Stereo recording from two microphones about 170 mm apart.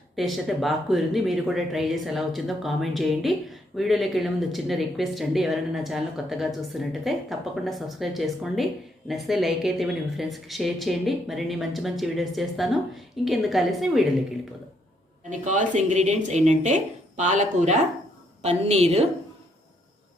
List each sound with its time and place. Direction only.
0.2 s speech: centre (ahead or behind)
15.3 s a woman's voice: 45° right (ahead or behind)